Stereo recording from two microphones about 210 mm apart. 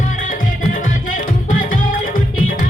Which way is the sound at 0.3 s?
40° left (ahead or behind).